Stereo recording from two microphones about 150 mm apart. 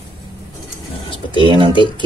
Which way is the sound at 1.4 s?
35° right (ahead or behind).